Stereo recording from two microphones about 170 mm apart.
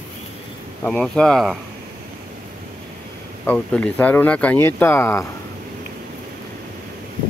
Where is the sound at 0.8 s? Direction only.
5° left (ahead or behind).